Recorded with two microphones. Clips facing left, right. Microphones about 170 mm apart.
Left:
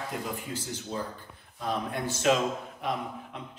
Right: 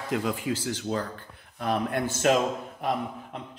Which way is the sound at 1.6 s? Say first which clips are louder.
Right 4 dB; 65° right (ahead or behind).